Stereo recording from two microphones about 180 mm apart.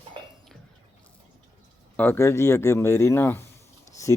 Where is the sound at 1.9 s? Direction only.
10° left (ahead or behind).